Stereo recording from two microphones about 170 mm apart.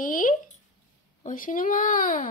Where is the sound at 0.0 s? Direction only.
55° left (ahead or behind).